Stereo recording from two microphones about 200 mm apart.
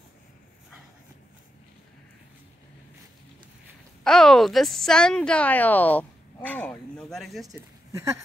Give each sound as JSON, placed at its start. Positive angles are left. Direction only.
{"t": 4.0, "sound": "a woman's voice", "side_deg": 5}
{"t": 7.4, "sound": "speech", "side_deg": -15}